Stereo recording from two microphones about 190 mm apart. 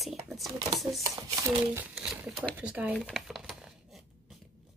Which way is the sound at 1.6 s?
10° right (ahead or behind).